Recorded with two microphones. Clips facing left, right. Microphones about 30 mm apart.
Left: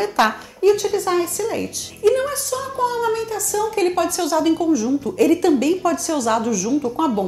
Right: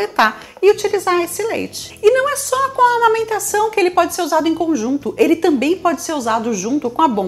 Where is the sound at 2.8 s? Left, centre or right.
Right.